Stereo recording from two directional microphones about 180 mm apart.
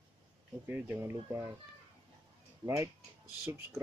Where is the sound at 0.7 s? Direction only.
10° right (ahead or behind).